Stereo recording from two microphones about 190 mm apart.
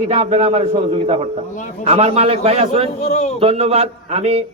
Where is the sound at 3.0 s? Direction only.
35° left (ahead or behind).